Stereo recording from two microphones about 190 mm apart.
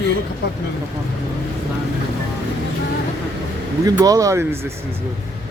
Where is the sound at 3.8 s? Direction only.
20° right (ahead or behind).